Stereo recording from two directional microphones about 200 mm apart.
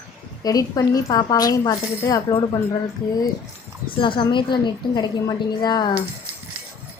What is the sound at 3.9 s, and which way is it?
A woman's voice, 25° left (ahead or behind).